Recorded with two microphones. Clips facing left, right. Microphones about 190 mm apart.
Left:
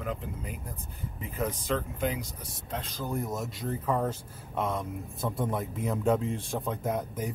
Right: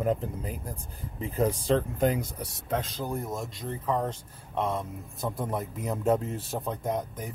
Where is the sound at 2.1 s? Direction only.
55° right (ahead or behind).